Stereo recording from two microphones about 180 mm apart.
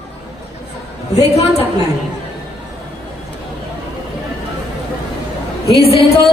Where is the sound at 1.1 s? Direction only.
35° left (ahead or behind).